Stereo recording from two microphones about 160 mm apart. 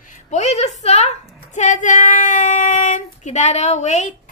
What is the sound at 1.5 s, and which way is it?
Child singing, 50° left (ahead or behind).